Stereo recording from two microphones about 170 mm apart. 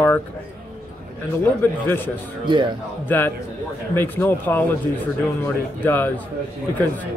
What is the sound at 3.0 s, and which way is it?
A man's voice, 10° left (ahead or behind).